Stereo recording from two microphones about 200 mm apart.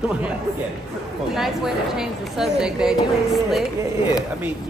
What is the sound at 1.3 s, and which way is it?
Speech, centre (ahead or behind).